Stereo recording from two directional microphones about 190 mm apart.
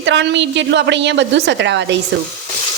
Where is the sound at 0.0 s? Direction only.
70° right (ahead or behind).